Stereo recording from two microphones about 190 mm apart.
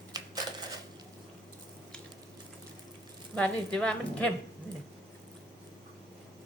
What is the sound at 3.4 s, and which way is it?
Speech, 5° left (ahead or behind).